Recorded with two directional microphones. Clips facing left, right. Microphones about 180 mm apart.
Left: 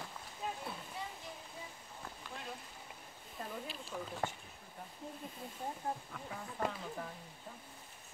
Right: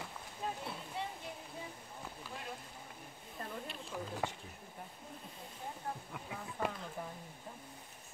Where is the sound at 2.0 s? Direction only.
5° right (ahead or behind).